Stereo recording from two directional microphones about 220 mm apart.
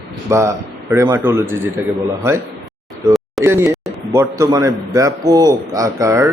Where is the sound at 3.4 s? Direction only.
10° right (ahead or behind).